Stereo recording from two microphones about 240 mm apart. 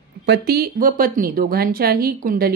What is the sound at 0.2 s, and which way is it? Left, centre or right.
Speech, right.